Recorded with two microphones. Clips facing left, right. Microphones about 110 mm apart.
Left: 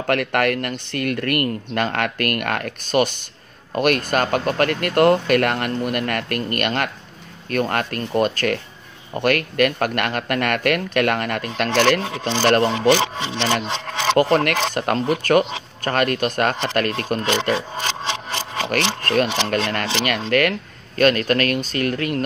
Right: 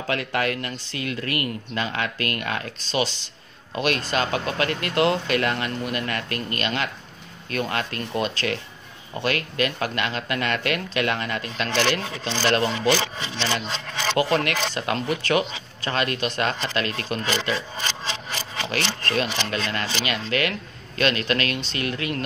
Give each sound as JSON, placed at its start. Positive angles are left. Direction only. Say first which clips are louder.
{"t": 0.0, "sound": "speech", "louder": "left 6 dB", "side_deg": 60}
{"t": 14.1, "sound": "speech", "louder": "left 5 dB", "side_deg": 50}
{"t": 17.3, "sound": "speech", "louder": "left 5 dB", "side_deg": 65}
{"t": 18.7, "sound": "speech", "louder": "left 5 dB", "side_deg": 50}